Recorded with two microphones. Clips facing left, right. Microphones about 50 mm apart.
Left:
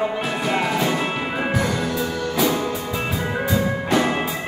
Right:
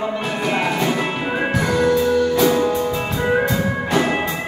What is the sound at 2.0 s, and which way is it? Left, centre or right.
Music, centre.